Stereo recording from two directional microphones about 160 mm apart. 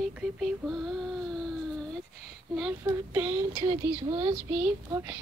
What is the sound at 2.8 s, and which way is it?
Speech, 10° right (ahead or behind).